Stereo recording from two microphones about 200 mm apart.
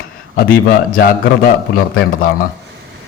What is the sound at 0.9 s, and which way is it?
Speech, 50° left (ahead or behind).